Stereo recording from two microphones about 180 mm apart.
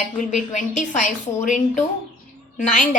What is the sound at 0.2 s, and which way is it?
A woman's voice, 45° left (ahead or behind).